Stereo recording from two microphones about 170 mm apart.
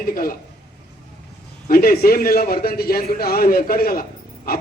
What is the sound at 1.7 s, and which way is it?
Speech, 60° left (ahead or behind).